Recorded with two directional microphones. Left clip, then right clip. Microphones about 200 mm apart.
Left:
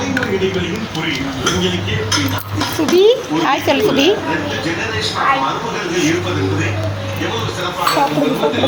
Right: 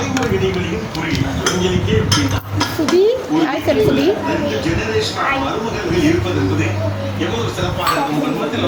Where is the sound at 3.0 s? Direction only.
5° right (ahead or behind).